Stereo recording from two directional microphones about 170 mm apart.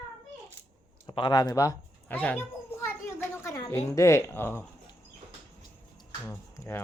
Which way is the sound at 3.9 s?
15° left (ahead or behind).